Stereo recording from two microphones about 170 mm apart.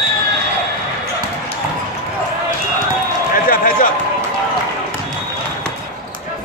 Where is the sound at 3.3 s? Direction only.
55° left (ahead or behind).